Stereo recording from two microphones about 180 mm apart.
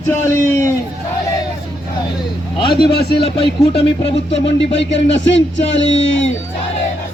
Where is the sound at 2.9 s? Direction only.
65° left (ahead or behind).